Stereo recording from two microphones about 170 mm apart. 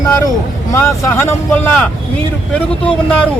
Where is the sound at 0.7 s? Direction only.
15° left (ahead or behind).